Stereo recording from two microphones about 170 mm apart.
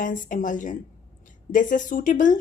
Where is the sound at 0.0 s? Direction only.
50° left (ahead or behind).